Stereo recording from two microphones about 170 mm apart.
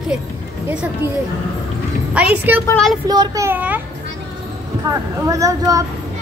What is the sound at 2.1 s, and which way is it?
Speech, 10° right (ahead or behind).